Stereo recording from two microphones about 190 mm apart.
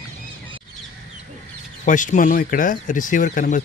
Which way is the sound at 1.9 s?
40° left (ahead or behind).